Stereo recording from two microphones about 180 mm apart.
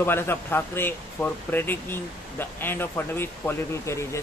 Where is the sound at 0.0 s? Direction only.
10° left (ahead or behind).